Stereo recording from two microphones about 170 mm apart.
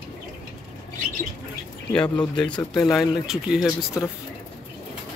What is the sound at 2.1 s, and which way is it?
Speech, 5° left (ahead or behind).